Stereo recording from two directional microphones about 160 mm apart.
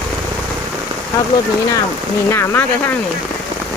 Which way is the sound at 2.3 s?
15° left (ahead or behind).